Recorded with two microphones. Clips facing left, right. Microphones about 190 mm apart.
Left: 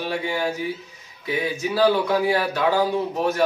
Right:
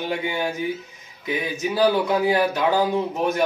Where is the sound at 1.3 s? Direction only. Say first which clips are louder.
Left 1 dB; 20° right (ahead or behind).